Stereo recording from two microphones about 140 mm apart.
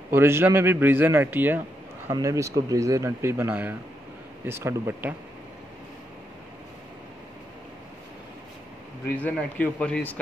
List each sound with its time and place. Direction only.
0.1 s a man's voice: 15° right (ahead or behind)
9.1 s a man's voice: 10° left (ahead or behind)